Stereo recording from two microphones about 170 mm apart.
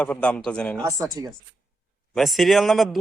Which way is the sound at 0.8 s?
20° right (ahead or behind).